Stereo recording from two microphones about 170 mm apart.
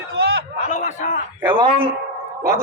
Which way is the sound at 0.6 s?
45° left (ahead or behind).